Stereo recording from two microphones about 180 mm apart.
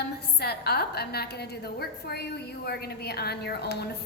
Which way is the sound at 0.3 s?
60° left (ahead or behind).